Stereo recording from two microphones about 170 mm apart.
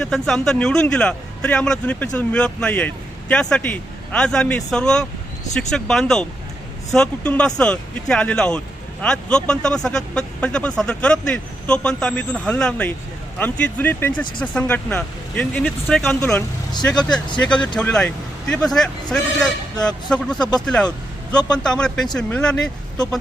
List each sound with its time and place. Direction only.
0.0 s speech: 5° left (ahead or behind)
17.1 s speech: 25° left (ahead or behind)
17.7 s speech: 5° left (ahead or behind)